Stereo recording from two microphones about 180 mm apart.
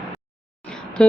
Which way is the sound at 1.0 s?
5° left (ahead or behind).